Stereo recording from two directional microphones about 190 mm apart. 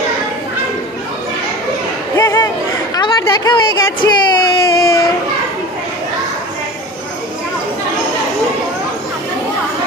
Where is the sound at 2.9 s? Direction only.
20° left (ahead or behind).